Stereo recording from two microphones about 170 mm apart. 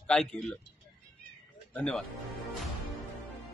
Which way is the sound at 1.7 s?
5° left (ahead or behind).